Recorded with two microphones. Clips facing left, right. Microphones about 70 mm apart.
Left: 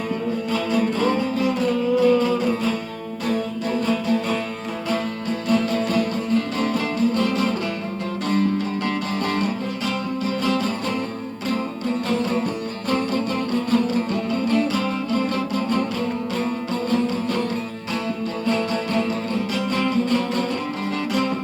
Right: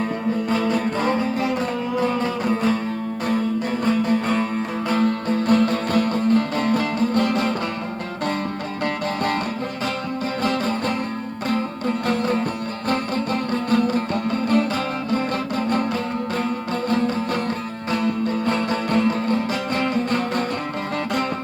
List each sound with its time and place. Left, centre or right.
0.7 s music: right
5.5 s music: right
10.4 s music: right
12.9 s music: right
18.4 s music: right